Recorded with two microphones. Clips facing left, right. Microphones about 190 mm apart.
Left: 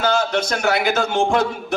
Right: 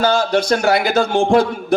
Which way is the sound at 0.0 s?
35° right (ahead or behind).